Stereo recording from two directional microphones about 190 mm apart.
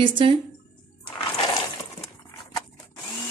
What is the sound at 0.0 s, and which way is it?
Speech, 25° right (ahead or behind).